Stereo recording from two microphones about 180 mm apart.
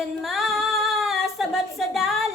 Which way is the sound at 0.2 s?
Centre (ahead or behind).